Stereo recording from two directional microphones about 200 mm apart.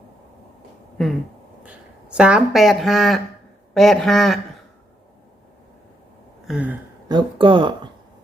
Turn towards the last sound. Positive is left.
turn(degrees=-25)  # may be behind; listen again after turning